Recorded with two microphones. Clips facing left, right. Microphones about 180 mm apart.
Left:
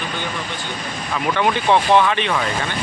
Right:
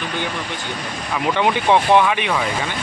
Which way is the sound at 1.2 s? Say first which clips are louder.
Right 1 dB; 15° right (ahead or behind).